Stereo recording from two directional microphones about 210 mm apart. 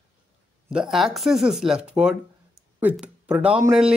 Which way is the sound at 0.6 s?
5° right (ahead or behind).